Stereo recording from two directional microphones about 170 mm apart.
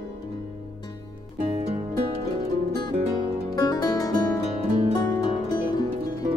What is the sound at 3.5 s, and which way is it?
Music, 25° left (ahead or behind).